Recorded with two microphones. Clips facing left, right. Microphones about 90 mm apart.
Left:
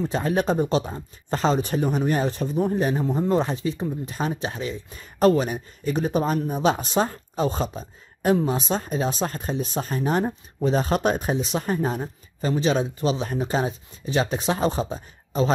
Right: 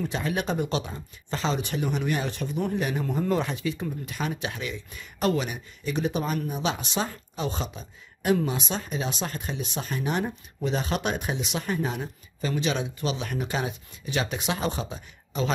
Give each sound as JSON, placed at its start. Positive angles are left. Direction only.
{"t": 0.0, "sound": "speech", "side_deg": 35}